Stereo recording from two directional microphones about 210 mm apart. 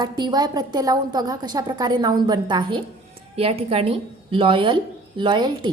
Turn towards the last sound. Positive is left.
turn(degrees=-20)  # may be behind; listen again after turning